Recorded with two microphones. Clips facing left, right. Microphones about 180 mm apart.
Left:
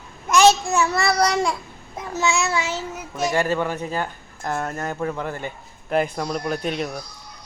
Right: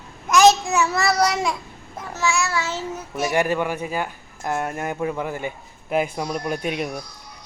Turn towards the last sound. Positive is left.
turn(degrees=-10)  # may be behind; listen again after turning